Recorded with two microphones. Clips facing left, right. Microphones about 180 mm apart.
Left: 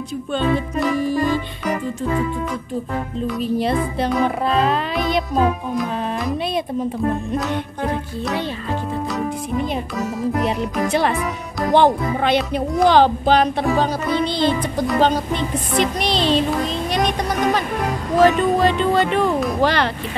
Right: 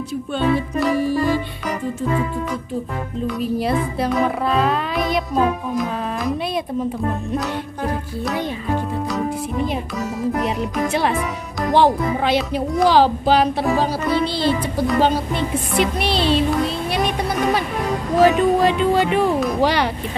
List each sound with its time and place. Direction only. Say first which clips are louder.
0.3 s speech: even; 5° right (ahead or behind)
3.3 s a child's voice: even; centre (ahead or behind)
9.9 s speech: left 1 dB; centre (ahead or behind)
17.6 s speech: even; centre (ahead or behind)